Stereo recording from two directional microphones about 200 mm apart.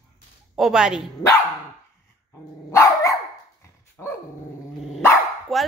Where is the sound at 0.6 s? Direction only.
5° right (ahead or behind).